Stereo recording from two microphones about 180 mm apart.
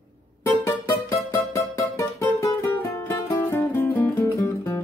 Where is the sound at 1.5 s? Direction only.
15° left (ahead or behind).